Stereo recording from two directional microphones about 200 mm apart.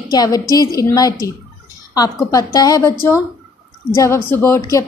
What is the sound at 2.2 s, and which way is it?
Speech, 20° left (ahead or behind).